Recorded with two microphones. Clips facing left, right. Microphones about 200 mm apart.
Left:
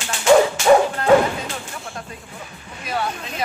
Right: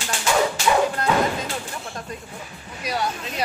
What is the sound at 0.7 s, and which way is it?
Music, 45° left (ahead or behind).